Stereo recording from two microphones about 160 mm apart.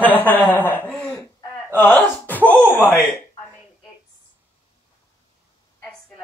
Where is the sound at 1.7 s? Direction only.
10° left (ahead or behind).